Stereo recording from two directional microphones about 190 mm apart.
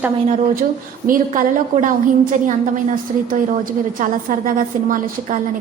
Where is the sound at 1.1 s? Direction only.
45° right (ahead or behind).